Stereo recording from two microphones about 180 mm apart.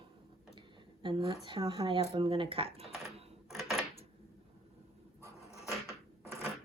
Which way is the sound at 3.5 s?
Centre (ahead or behind).